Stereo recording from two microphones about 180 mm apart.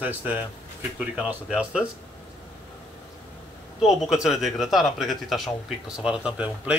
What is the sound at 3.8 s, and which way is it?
Speech, centre (ahead or behind).